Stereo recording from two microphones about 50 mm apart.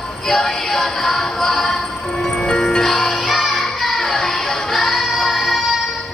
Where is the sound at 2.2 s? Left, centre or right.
Left.